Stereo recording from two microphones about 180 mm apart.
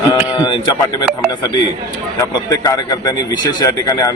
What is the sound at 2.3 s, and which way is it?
Speech, 20° left (ahead or behind).